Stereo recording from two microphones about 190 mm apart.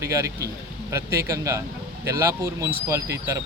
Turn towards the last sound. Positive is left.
turn(degrees=-15)  # may be behind; listen again after turning